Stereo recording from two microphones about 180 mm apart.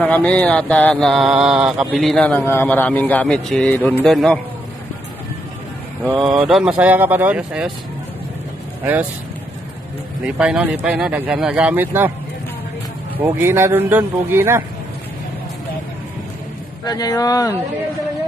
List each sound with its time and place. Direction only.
0.0 s speech: 10° left (ahead or behind)
6.1 s speech: centre (ahead or behind)
10.2 s speech: 5° right (ahead or behind)
13.2 s speech: 15° right (ahead or behind)
16.8 s speech: 20° left (ahead or behind)